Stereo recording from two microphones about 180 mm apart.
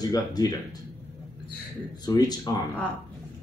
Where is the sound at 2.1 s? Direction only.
20° left (ahead or behind).